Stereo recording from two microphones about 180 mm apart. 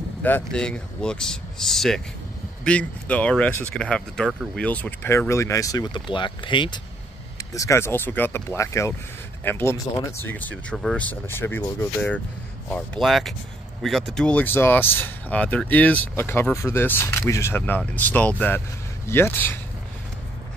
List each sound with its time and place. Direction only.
0.2 s speech: 5° left (ahead or behind)